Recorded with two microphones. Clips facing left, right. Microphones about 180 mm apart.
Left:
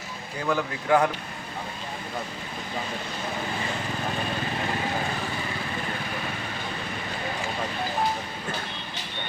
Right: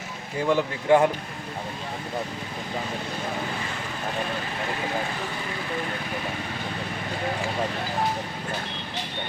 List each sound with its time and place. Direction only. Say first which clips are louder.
0.4 s a man's voice: right 4 dB; 25° right (ahead or behind)